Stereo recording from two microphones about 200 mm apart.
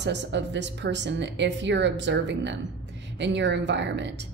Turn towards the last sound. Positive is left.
turn(degrees=-60)  # may be behind; listen again after turning